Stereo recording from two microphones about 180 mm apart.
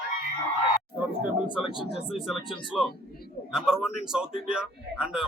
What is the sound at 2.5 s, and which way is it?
Speech, 30° left (ahead or behind).